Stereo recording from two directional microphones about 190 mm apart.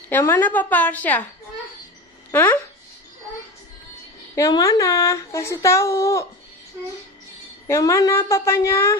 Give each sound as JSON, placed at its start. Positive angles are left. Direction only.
{"t": 0.2, "sound": "speech", "side_deg": 10}
{"t": 2.3, "sound": "speech", "side_deg": 10}
{"t": 4.4, "sound": "speech", "side_deg": 20}
{"t": 7.6, "sound": "speech", "side_deg": 15}